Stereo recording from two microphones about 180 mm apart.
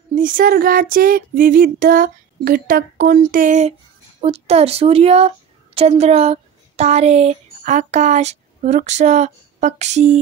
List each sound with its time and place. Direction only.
0.1 s female singing: 50° right (ahead or behind)
4.2 s a woman's voice: 35° right (ahead or behind)